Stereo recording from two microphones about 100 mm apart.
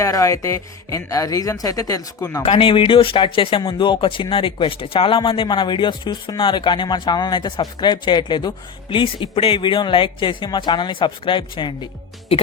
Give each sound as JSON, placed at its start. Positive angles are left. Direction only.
{"t": 0.0, "sound": "speech", "side_deg": 35}
{"t": 2.4, "sound": "speech", "side_deg": 70}
{"t": 3.6, "sound": "speech", "side_deg": 50}